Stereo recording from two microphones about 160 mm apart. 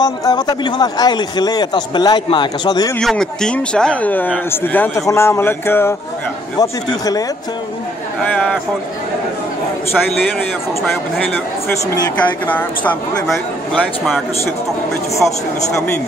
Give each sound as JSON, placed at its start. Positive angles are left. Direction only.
{"t": 0.0, "sound": "a man's voice", "side_deg": 25}
{"t": 3.0, "sound": "a man's voice", "side_deg": 5}
{"t": 8.2, "sound": "speech", "side_deg": 10}
{"t": 10.0, "sound": "speech", "side_deg": 10}
{"t": 12.2, "sound": "speech", "side_deg": 10}